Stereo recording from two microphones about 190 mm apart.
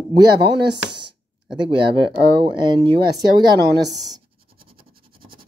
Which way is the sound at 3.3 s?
20° right (ahead or behind).